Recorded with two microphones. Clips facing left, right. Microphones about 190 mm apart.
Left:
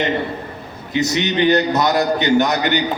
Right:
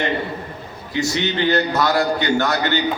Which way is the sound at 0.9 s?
20° left (ahead or behind).